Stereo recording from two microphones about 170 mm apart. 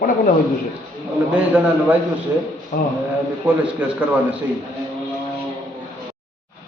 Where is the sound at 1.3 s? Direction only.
10° right (ahead or behind).